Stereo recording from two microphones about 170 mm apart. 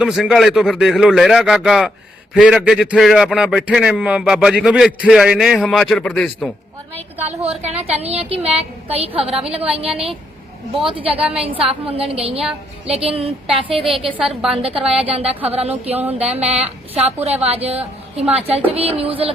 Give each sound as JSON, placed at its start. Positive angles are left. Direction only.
{"t": 0.0, "sound": "a man's voice", "side_deg": 0}
{"t": 7.5, "sound": "a woman's voice", "side_deg": -40}
{"t": 10.8, "sound": "a woman's voice", "side_deg": -35}
{"t": 14.2, "sound": "a man's voice", "side_deg": 0}
{"t": 14.6, "sound": "a woman's voice", "side_deg": -35}